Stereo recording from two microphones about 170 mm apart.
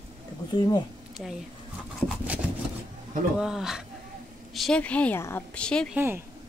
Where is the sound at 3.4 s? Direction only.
5° right (ahead or behind).